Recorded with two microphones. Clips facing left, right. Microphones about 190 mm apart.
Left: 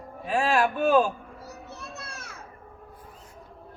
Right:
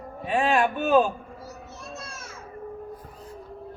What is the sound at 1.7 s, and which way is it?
Children playing, 60° left (ahead or behind).